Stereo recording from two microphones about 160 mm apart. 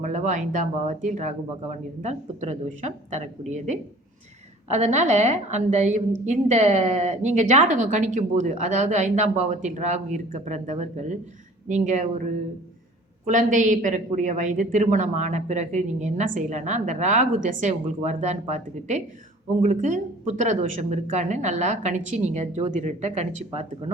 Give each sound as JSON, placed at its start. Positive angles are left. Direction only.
{"t": 0.0, "sound": "a woman's voice", "side_deg": -50}
{"t": 13.2, "sound": "a woman's voice", "side_deg": -50}